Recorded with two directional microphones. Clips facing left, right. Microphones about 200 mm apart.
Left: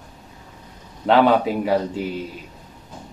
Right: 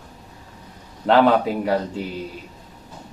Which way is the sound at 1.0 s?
Centre (ahead or behind).